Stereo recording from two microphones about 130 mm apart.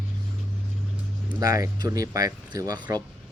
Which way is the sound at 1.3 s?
25° right (ahead or behind).